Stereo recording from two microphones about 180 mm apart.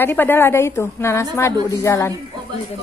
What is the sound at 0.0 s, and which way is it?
A woman's voice, 10° left (ahead or behind).